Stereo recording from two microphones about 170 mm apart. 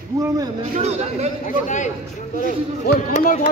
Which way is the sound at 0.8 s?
40° right (ahead or behind).